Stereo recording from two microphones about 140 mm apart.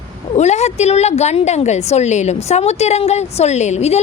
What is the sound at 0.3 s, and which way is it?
A woman's voice, 55° left (ahead or behind).